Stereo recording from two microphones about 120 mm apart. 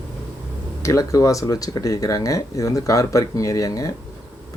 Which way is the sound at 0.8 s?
25° left (ahead or behind).